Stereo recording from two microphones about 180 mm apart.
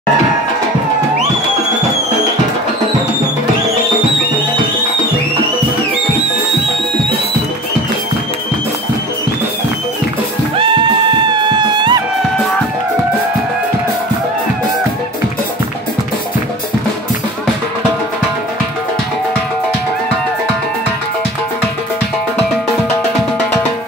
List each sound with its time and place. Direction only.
10.6 s music: 25° right (ahead or behind)